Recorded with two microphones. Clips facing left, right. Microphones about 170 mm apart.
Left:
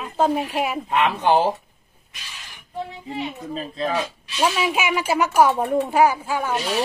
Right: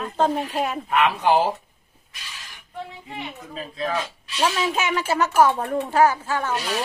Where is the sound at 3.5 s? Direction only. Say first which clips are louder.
Left 1 dB; 30° left (ahead or behind).